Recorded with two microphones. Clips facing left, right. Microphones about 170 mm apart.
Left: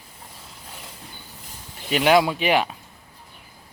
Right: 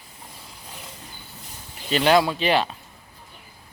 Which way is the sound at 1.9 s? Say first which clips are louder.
Left 1 dB; 10° left (ahead or behind).